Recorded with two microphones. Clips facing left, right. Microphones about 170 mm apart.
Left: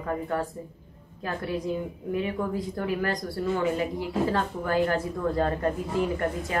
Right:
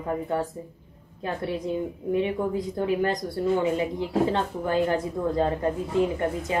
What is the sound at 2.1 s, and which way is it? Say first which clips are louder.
A woman's voice: right 3 dB; 20° right (ahead or behind).